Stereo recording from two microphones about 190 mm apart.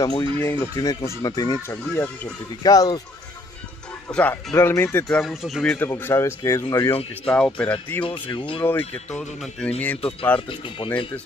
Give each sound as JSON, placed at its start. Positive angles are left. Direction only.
{"t": 0.0, "sound": "speech", "side_deg": 20}
{"t": 4.1, "sound": "speech", "side_deg": 5}
{"t": 5.2, "sound": "speech", "side_deg": 0}
{"t": 7.2, "sound": "speech", "side_deg": 5}
{"t": 8.0, "sound": "speech", "side_deg": 25}
{"t": 8.6, "sound": "speech", "side_deg": 10}
{"t": 10.5, "sound": "speech", "side_deg": 25}